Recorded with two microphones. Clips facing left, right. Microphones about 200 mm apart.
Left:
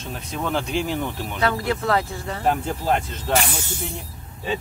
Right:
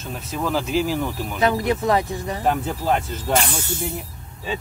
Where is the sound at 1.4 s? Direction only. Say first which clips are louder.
Right 3 dB; 20° right (ahead or behind).